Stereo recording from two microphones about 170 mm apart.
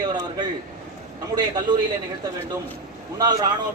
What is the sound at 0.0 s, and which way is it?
Speech, 25° right (ahead or behind).